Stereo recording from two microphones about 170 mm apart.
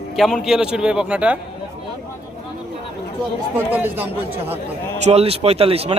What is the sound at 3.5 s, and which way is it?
Speech, 10° right (ahead or behind).